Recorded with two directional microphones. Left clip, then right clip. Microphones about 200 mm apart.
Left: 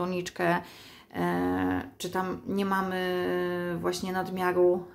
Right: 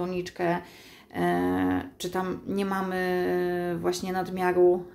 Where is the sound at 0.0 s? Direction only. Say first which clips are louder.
Even; 15° left (ahead or behind).